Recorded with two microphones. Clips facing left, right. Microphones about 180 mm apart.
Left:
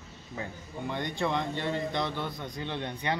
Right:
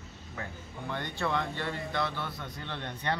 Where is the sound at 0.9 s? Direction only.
15° left (ahead or behind).